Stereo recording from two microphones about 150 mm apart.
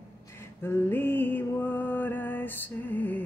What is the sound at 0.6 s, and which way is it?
Mantra, 15° left (ahead or behind).